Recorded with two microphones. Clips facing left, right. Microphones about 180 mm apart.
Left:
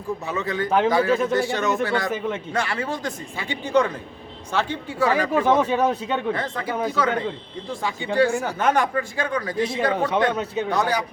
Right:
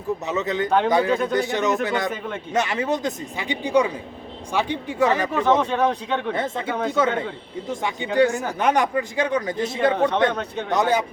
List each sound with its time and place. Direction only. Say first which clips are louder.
0.3 s a man's voice: right 1 dB; 20° right (ahead or behind)
2.0 s speech: left 2 dB; centre (ahead or behind)
2.5 s a man's voice: right 9 dB; 20° right (ahead or behind)
5.3 s speech: left 1 dB; 10° left (ahead or behind)
6.3 s a man's voice: right 2 dB; 25° right (ahead or behind)
10.3 s speech: left 3 dB; 5° left (ahead or behind)
10.7 s a man's voice: right 4 dB; 20° right (ahead or behind)